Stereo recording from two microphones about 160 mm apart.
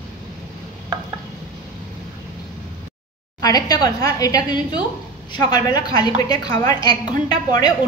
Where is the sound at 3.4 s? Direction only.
25° left (ahead or behind).